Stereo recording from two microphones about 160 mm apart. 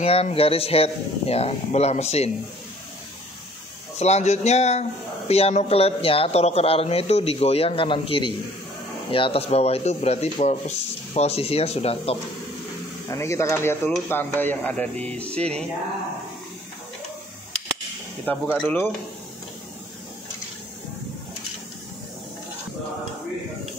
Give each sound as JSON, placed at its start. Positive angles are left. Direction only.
{"t": 0.0, "sound": "speech", "side_deg": 35}
{"t": 4.0, "sound": "speech", "side_deg": 45}
{"t": 13.1, "sound": "speech", "side_deg": 15}
{"t": 18.2, "sound": "speech", "side_deg": 10}